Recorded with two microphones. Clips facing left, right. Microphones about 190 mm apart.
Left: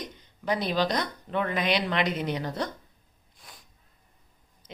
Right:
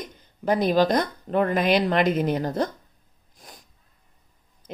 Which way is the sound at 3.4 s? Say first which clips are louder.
Right 5 dB; 40° right (ahead or behind).